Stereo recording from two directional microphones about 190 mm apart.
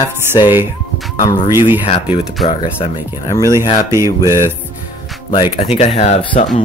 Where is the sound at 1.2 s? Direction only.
20° left (ahead or behind).